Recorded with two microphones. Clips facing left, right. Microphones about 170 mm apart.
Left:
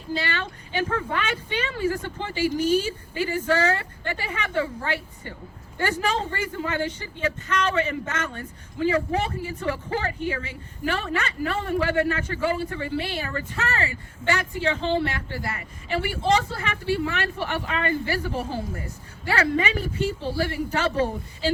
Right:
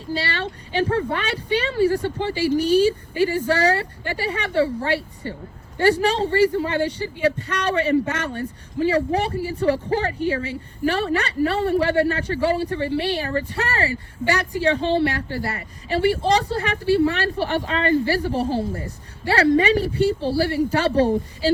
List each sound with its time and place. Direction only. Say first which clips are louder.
0.1 s speech: right 3 dB; 35° right (ahead or behind)